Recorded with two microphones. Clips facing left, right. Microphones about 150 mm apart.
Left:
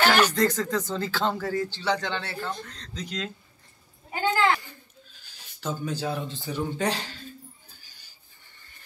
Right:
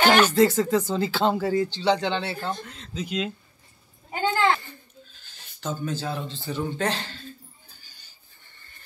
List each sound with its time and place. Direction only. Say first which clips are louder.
0.2 s speech: right 4 dB; 10° right (ahead or behind)
4.1 s a sound: right 1 dB; 25° right (ahead or behind)
5.2 s speech: even; 5° left (ahead or behind)